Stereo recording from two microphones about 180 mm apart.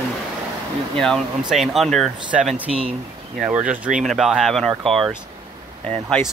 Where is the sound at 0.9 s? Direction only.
5° left (ahead or behind).